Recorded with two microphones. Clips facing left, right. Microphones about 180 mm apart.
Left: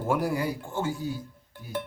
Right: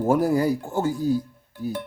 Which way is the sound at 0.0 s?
40° right (ahead or behind).